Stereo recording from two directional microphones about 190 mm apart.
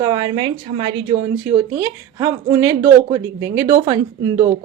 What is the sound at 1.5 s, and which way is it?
Speech, 15° right (ahead or behind).